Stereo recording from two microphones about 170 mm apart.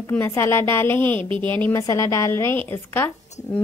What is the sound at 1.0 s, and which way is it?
Speech, 30° right (ahead or behind).